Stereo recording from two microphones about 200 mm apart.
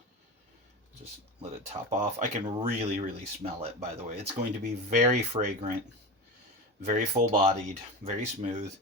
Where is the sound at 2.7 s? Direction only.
30° right (ahead or behind).